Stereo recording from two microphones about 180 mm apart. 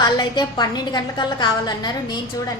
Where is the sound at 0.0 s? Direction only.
25° left (ahead or behind).